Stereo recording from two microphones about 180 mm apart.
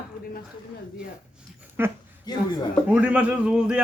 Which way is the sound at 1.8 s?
10° right (ahead or behind).